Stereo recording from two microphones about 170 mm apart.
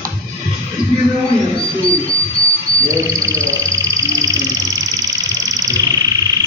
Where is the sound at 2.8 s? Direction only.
20° right (ahead or behind).